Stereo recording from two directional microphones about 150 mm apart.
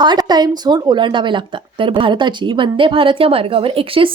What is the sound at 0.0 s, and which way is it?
Speech, 30° right (ahead or behind).